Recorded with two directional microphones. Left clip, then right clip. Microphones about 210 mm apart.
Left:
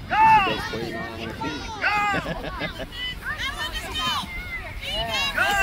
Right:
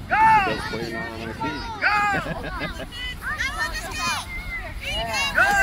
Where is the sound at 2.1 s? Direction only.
Centre (ahead or behind).